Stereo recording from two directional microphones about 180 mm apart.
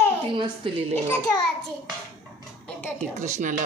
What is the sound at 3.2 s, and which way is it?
Speech, 45° right (ahead or behind).